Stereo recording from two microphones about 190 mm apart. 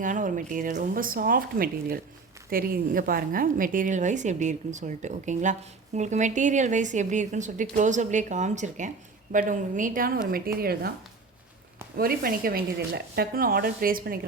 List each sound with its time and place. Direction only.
0.0 s a woman's voice: 45° right (ahead or behind)
11.9 s speech: 50° right (ahead or behind)